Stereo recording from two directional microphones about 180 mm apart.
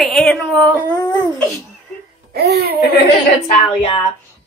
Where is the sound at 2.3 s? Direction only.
60° right (ahead or behind).